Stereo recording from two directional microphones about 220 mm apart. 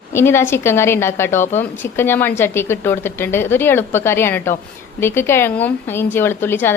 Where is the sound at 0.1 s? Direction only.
10° left (ahead or behind).